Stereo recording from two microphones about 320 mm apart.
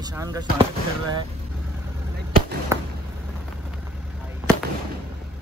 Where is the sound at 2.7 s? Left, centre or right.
Centre.